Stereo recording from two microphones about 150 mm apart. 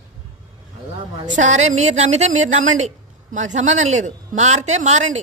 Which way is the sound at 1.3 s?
55° right (ahead or behind).